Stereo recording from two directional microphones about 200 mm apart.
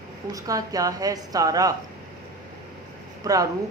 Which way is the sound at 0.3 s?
15° right (ahead or behind).